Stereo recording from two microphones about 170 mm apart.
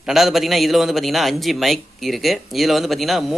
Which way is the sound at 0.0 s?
Centre (ahead or behind).